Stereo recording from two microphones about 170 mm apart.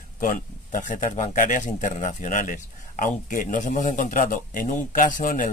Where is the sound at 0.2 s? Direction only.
50° left (ahead or behind).